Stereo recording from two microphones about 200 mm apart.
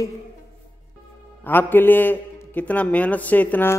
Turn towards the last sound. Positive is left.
turn(degrees=10)  # may be behind; listen again after turning